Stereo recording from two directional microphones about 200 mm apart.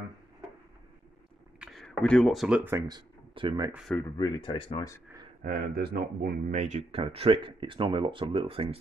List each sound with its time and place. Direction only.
1.6 s speech: centre (ahead or behind)
2.9 s speech: 20° right (ahead or behind)
4.2 s speech: 20° left (ahead or behind)
5.4 s speech: 50° right (ahead or behind); by 8.7 s 30° right (ahead or behind)